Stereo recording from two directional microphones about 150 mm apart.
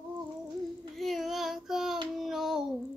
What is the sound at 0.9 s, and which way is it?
Child singing, centre (ahead or behind).